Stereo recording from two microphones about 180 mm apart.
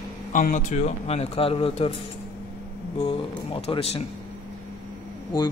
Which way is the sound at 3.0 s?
30° left (ahead or behind).